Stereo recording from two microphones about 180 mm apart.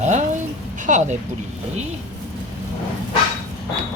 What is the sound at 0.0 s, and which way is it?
Speech, 40° right (ahead or behind).